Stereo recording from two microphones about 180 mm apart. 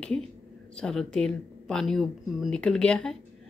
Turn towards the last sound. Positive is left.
turn(degrees=5)  # may be behind; listen again after turning